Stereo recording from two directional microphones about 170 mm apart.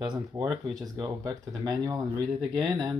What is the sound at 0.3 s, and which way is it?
Speech, 20° right (ahead or behind).